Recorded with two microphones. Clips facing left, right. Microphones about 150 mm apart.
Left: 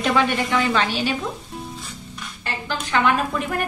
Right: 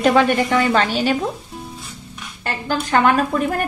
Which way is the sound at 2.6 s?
45° right (ahead or behind).